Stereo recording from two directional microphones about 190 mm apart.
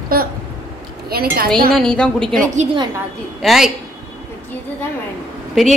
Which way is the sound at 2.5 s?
35° right (ahead or behind).